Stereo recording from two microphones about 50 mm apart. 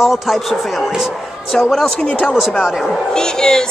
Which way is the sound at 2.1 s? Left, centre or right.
Left.